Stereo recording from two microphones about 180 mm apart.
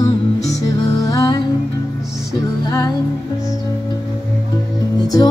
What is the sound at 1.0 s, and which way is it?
Music, 20° left (ahead or behind).